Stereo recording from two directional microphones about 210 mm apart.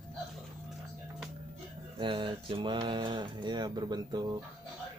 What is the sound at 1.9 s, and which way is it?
Speech, 20° right (ahead or behind).